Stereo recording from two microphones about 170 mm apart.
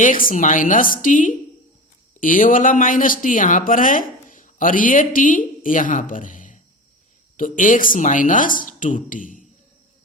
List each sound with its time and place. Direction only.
0.0 s speech: 55° left (ahead or behind)